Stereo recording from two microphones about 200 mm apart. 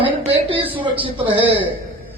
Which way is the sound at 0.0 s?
25° right (ahead or behind).